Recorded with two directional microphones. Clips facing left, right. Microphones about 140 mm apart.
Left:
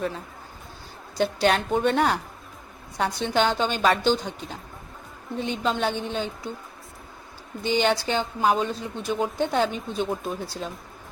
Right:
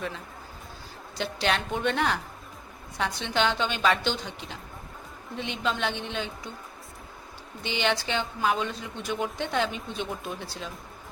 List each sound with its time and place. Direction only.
1.2 s a woman's voice: 45° left (ahead or behind)
7.6 s a woman's voice: 40° left (ahead or behind)